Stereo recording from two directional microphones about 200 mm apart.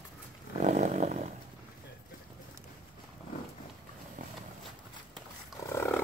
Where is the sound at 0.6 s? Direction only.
35° right (ahead or behind).